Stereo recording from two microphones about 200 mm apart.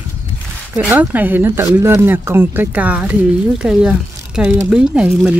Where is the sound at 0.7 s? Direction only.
10° right (ahead or behind).